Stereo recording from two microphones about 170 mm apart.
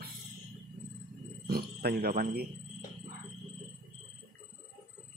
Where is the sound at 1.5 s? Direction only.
60° right (ahead or behind).